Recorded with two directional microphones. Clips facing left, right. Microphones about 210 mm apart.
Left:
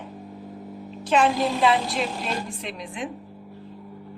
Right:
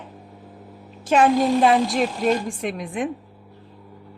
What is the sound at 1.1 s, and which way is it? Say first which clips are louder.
A woman's voice: right 4 dB; 45° right (ahead or behind).